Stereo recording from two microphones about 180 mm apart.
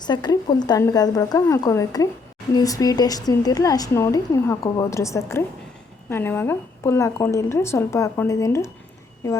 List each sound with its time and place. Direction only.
0.0 s a woman's voice: 25° left (ahead or behind)